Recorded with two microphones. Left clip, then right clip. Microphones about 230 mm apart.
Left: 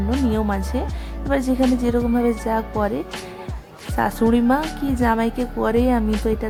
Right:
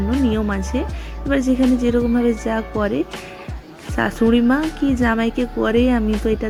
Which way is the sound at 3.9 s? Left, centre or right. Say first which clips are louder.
Right 2 dB; centre.